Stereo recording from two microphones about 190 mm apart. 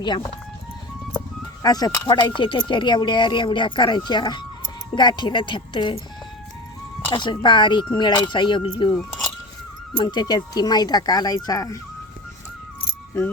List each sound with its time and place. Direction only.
0.0 s speech: 25° left (ahead or behind)
1.6 s speech: 20° left (ahead or behind)
7.1 s speech: 25° left (ahead or behind)
8.9 s keys jangling: 5° left (ahead or behind)
10.0 s speech: 25° left (ahead or behind)